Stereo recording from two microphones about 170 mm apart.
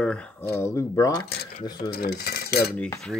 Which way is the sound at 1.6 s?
25° left (ahead or behind).